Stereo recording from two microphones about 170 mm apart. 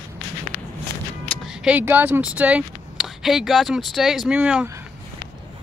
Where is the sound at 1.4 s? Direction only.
5° right (ahead or behind).